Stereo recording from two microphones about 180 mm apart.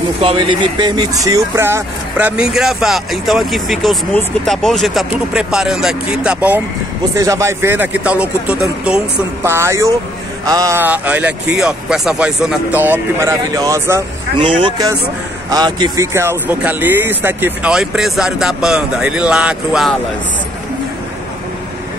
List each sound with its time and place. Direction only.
0.2 s speech: 30° right (ahead or behind); by 6.6 s 5° right (ahead or behind)
7.2 s speech: 15° right (ahead or behind); by 20.0 s centre (ahead or behind)